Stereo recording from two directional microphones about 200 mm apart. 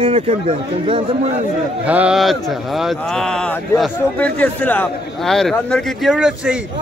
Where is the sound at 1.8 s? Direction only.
5° right (ahead or behind).